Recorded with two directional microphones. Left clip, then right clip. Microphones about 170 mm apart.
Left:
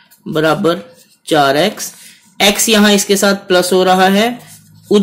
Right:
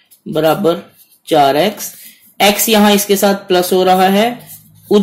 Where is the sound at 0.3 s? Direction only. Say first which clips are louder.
Even; 15° left (ahead or behind).